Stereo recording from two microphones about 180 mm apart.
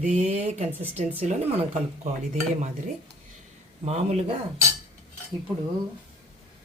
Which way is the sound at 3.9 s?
35° right (ahead or behind).